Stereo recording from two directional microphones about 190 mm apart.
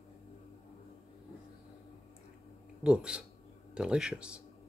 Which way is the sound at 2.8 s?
5° right (ahead or behind).